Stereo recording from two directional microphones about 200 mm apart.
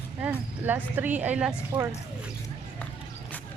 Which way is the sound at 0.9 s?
10° right (ahead or behind).